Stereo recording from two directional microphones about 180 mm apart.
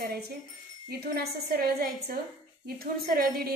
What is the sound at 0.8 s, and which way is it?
A woman's voice, 60° right (ahead or behind).